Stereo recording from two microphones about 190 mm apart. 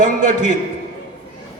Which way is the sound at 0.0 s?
40° right (ahead or behind).